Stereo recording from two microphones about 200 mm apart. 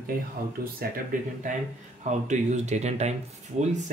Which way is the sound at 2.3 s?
35° right (ahead or behind).